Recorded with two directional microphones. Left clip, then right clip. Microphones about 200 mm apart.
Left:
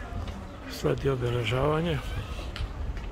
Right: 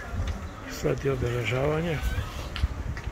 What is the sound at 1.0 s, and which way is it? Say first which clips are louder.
Speech: even; 20° left (ahead or behind).